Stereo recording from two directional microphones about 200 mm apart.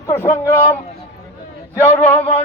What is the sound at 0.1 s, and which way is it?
Speech, 15° left (ahead or behind).